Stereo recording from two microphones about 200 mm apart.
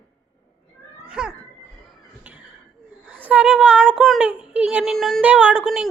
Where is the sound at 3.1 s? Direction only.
10° right (ahead or behind).